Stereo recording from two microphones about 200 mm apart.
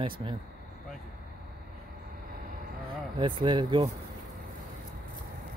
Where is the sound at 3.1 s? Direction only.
25° right (ahead or behind).